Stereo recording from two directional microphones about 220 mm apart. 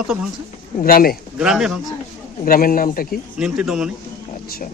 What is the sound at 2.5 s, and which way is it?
Speech, 40° left (ahead or behind).